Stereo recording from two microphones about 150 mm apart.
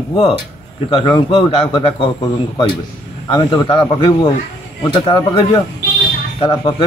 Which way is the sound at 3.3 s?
30° left (ahead or behind).